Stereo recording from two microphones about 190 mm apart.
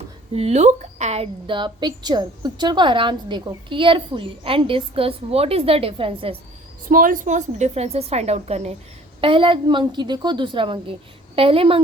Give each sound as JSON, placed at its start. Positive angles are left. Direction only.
{"t": 0.3, "sound": "a woman's voice", "side_deg": -35}
{"t": 6.8, "sound": "a woman's voice", "side_deg": -45}